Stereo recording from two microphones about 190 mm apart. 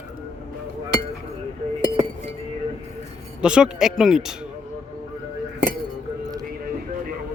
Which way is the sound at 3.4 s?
5° right (ahead or behind).